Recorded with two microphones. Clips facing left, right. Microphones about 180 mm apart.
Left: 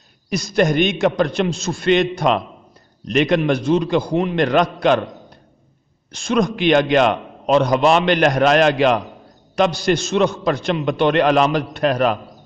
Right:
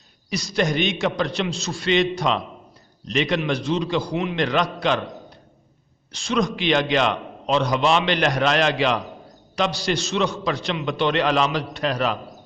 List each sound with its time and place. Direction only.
0.3 s a man's voice: 50° left (ahead or behind)
6.1 s a man's voice: 50° left (ahead or behind)